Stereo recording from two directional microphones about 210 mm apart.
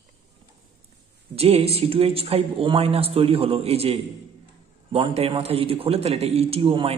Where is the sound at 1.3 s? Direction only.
30° right (ahead or behind).